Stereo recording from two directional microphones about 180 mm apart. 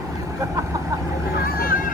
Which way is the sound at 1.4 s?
50° left (ahead or behind).